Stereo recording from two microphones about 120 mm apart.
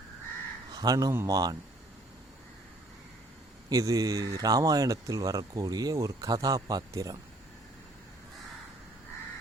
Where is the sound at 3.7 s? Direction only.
30° right (ahead or behind).